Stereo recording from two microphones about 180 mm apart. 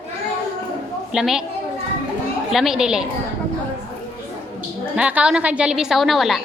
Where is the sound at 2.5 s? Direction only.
Centre (ahead or behind).